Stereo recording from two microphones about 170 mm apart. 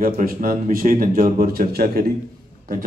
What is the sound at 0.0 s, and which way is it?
A man's voice, 60° right (ahead or behind).